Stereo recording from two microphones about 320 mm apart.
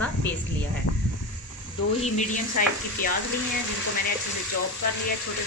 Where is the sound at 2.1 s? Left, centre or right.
Left.